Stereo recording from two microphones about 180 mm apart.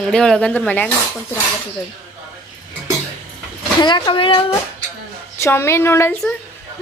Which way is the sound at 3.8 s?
25° left (ahead or behind).